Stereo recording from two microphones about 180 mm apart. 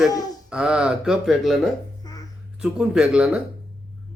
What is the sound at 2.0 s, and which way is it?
Babbling, 20° left (ahead or behind).